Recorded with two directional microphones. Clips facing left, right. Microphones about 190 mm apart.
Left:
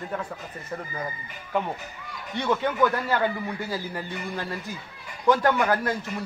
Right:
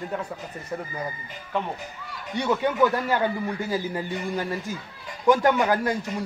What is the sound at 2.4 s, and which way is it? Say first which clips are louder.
Speech: right 2 dB; 15° right (ahead or behind).